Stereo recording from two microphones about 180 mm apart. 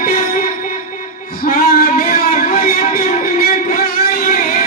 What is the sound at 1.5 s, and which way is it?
Music, 55° left (ahead or behind).